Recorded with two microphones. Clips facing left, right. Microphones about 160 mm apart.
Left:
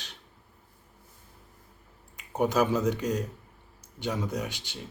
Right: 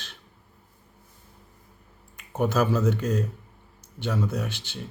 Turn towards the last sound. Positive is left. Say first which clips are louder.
# right 2 dB
turn(degrees=15)  # may be behind; listen again after turning